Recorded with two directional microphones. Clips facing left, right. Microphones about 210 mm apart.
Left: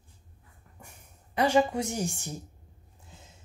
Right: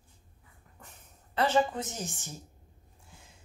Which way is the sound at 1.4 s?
10° left (ahead or behind).